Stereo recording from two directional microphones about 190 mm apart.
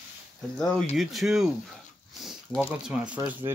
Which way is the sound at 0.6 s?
5° left (ahead or behind).